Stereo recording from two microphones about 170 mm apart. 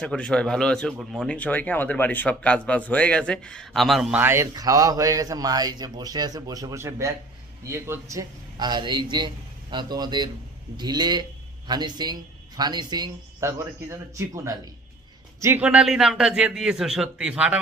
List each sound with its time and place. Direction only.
0.0 s a man's voice: 5° left (ahead or behind)
4.2 s a man's voice: 15° right (ahead or behind)